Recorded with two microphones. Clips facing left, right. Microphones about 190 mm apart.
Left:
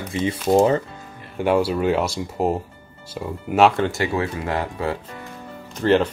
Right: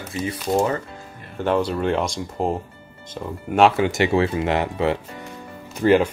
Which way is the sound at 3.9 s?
25° right (ahead or behind).